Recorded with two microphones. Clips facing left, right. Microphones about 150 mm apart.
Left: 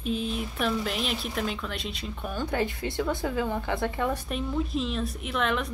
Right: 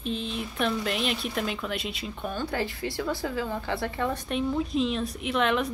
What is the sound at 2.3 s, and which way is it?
Speech, 20° left (ahead or behind).